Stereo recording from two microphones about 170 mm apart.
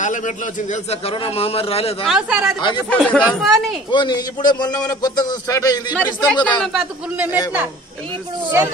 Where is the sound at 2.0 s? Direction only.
5° right (ahead or behind).